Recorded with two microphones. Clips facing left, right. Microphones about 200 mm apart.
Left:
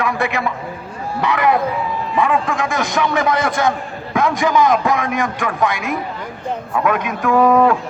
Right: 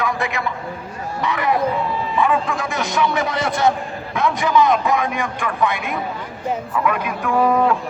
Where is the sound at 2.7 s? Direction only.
50° left (ahead or behind).